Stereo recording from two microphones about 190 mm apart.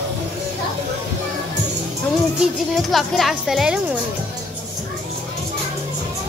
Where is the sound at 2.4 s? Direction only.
Centre (ahead or behind).